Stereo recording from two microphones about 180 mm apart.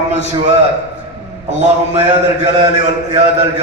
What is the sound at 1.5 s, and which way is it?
A man's voice, 35° right (ahead or behind).